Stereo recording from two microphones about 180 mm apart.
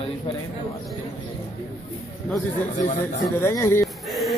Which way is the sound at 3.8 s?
Centre (ahead or behind).